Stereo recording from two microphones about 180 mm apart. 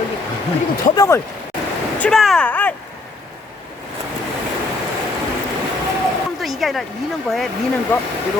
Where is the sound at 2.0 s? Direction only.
Centre (ahead or behind).